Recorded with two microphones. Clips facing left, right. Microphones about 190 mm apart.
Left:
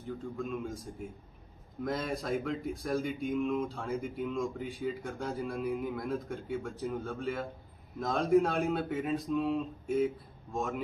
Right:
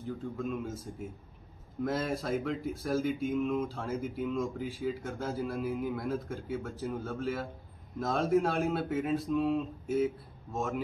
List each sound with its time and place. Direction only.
0.4 s speech: 5° right (ahead or behind)
1.9 s speech: centre (ahead or behind)